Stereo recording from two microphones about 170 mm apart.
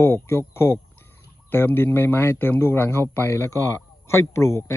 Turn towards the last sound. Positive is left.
turn(degrees=15)  # may be behind; listen again after turning